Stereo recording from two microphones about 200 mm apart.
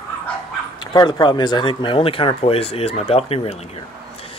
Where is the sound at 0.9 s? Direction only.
20° left (ahead or behind).